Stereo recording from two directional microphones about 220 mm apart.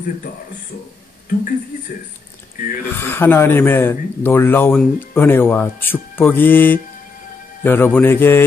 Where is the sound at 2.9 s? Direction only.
10° left (ahead or behind).